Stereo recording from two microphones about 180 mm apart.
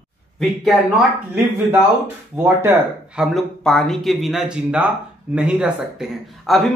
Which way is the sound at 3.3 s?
Centre (ahead or behind).